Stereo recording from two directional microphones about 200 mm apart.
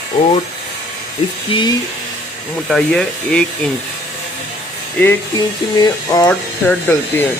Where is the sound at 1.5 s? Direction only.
25° left (ahead or behind).